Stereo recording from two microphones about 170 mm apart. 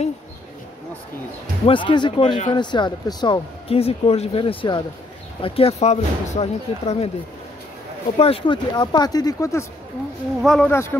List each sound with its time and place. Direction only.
1.7 s speech: 30° left (ahead or behind)
3.6 s speech: 35° left (ahead or behind)
8.2 s speech: 35° left (ahead or behind); by 9.7 s 20° left (ahead or behind)
10.4 s speech: centre (ahead or behind)
10.7 s a man's voice: 15° left (ahead or behind)